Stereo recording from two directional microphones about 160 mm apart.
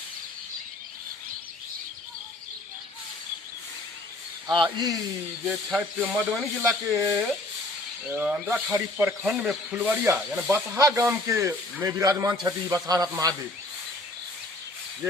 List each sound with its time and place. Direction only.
4.4 s speech: 30° right (ahead or behind)
5.5 s speech: 10° right (ahead or behind)
9.2 s speech: 5° right (ahead or behind); by 13.3 s 20° right (ahead or behind)